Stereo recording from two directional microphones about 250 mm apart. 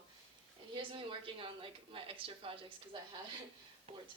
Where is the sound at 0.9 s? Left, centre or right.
Right.